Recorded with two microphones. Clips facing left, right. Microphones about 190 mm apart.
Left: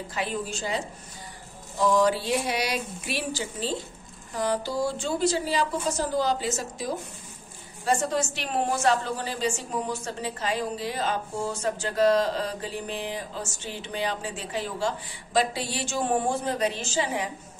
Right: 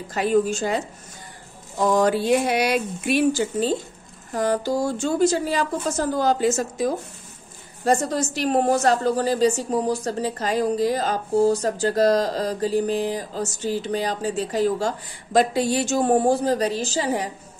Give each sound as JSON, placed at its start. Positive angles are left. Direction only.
{"t": 0.1, "sound": "speech", "side_deg": -45}
{"t": 7.8, "sound": "a woman's voice", "side_deg": -40}